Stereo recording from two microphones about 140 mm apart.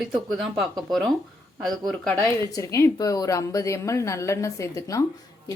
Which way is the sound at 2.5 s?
20° left (ahead or behind).